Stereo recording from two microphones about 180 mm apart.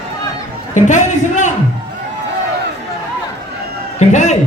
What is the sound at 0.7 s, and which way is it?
Speech, 45° left (ahead or behind).